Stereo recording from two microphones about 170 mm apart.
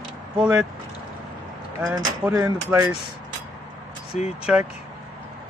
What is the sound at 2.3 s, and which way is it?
Speech, 20° right (ahead or behind).